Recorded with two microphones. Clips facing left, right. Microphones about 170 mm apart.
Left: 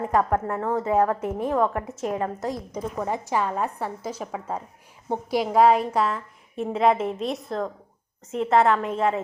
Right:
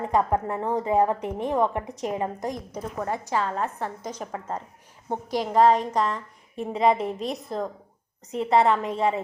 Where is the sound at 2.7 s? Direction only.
15° left (ahead or behind).